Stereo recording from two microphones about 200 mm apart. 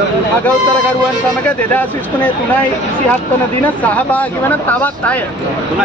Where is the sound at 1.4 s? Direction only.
5° left (ahead or behind).